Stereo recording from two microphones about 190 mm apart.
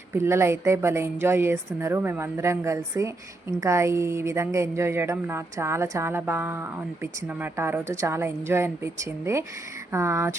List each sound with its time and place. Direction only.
0.1 s speech: 15° right (ahead or behind)